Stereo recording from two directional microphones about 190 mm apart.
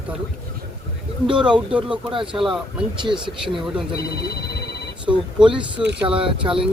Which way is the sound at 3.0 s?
25° right (ahead or behind).